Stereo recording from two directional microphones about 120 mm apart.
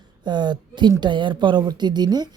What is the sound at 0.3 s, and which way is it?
A woman's voice, 40° right (ahead or behind).